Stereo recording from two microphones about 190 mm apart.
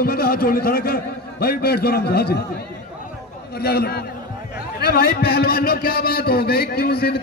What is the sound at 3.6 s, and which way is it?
A man's voice, 55° left (ahead or behind).